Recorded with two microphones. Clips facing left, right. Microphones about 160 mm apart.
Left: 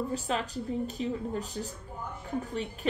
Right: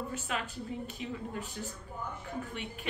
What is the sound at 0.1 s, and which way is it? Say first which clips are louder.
Speech: left 5 dB; 35° left (ahead or behind).